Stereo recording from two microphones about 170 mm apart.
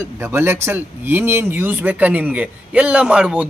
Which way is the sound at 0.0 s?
15° right (ahead or behind).